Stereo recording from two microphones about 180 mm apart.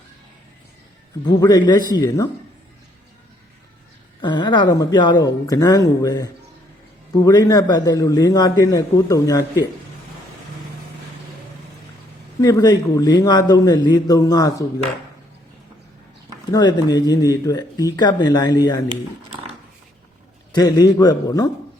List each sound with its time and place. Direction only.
1.2 s a man's voice: 20° left (ahead or behind)
4.2 s a man's voice: 25° left (ahead or behind)
12.4 s a man's voice: 20° left (ahead or behind)
16.5 s a man's voice: 25° left (ahead or behind)
20.5 s a man's voice: 20° left (ahead or behind)